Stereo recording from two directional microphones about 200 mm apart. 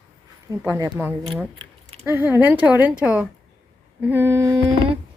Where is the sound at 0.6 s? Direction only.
15° right (ahead or behind).